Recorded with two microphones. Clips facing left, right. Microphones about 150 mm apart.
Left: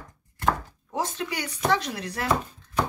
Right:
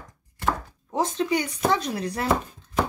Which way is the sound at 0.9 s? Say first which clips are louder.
Right 6 dB; 20° right (ahead or behind).